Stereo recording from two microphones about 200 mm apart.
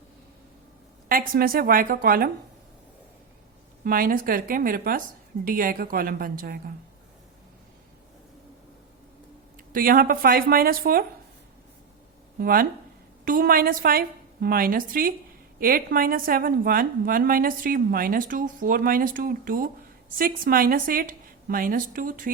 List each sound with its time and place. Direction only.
1.0 s a woman's voice: 45° right (ahead or behind)
3.8 s a woman's voice: 45° right (ahead or behind)
9.7 s a woman's voice: 45° right (ahead or behind)
12.4 s a woman's voice: 45° right (ahead or behind)